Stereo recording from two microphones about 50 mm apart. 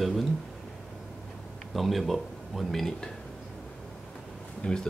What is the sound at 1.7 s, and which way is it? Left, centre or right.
Speech, centre.